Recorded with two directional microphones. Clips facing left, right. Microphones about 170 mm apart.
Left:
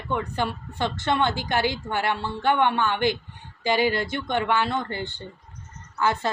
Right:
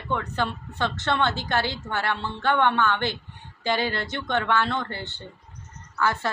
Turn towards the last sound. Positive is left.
turn(degrees=20)  # may be behind; listen again after turning